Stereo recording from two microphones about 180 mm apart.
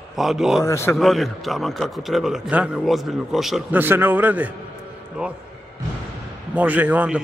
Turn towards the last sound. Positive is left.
turn(degrees=-10)  # may be behind; listen again after turning